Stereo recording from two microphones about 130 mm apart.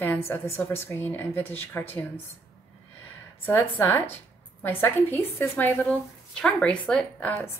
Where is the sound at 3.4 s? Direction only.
20° left (ahead or behind).